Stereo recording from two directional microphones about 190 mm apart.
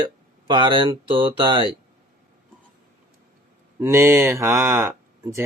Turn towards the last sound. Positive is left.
turn(degrees=-15)  # may be behind; listen again after turning